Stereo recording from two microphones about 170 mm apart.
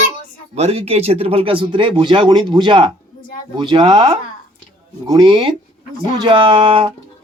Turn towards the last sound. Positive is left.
turn(degrees=-30)  # may be behind; listen again after turning